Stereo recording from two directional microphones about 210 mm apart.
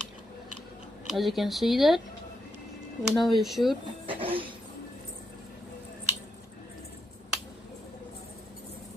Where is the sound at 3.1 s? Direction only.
Centre (ahead or behind).